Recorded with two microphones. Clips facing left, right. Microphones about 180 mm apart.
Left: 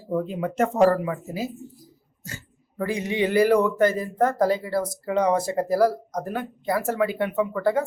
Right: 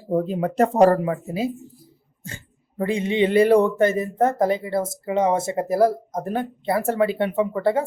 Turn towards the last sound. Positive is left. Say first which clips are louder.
# right 2 dB
turn(degrees=-30)  # may be behind; listen again after turning